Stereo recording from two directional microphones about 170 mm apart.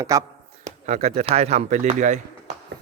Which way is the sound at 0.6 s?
40° right (ahead or behind).